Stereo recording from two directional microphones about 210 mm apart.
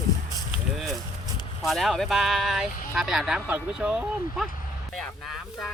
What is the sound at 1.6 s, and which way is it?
Speech, centre (ahead or behind).